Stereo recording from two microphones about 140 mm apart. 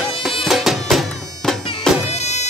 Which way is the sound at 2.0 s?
50° left (ahead or behind).